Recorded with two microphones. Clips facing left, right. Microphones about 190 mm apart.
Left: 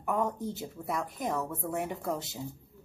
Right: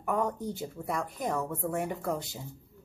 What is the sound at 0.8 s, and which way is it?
A woman's voice, 5° left (ahead or behind).